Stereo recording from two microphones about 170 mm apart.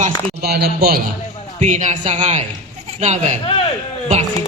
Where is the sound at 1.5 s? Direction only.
45° right (ahead or behind).